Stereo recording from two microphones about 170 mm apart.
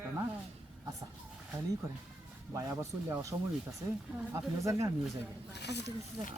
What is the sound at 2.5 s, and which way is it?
Speech, 15° right (ahead or behind).